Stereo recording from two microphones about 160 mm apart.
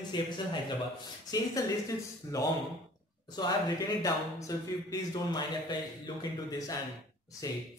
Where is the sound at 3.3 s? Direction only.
25° left (ahead or behind).